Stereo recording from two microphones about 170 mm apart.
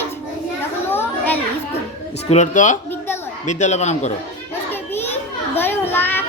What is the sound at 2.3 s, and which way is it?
Speech, 45° left (ahead or behind).